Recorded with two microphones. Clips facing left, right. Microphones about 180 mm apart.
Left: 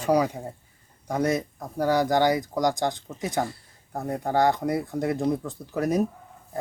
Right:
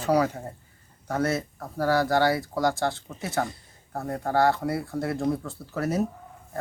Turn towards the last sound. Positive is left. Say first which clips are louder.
# left 3 dB
turn(degrees=15)  # may be behind; listen again after turning